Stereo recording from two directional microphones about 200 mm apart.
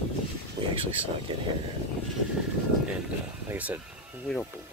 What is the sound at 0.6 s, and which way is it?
Speech, 35° right (ahead or behind).